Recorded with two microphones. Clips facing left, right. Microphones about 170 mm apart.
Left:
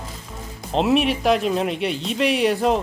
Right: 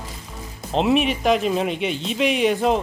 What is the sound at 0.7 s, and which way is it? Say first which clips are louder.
Speech: even; centre (ahead or behind).